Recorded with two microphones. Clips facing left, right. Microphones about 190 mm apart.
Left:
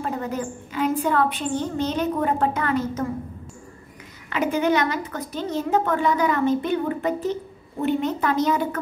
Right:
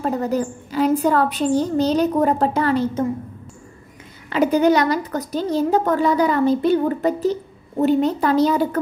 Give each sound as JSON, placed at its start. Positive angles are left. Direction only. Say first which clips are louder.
{"t": 0.0, "sound": "a woman's voice", "louder": "right 6 dB", "side_deg": -35}
{"t": 4.3, "sound": "a woman's voice", "louder": "right 6 dB", "side_deg": -35}